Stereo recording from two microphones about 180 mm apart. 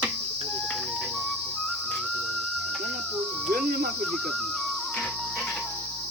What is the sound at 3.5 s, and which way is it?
Speech, 55° right (ahead or behind).